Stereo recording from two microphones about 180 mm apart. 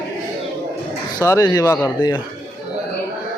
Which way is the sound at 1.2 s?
20° left (ahead or behind).